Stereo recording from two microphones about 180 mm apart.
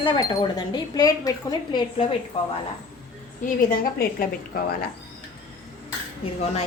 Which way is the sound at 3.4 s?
50° left (ahead or behind).